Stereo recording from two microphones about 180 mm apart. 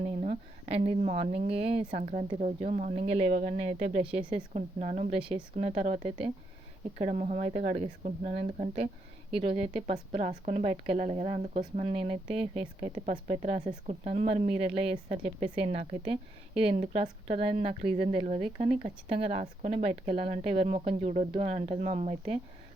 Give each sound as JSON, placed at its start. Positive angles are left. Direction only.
{"t": 0.2, "sound": "speech", "side_deg": -35}
{"t": 8.4, "sound": "speech", "side_deg": -35}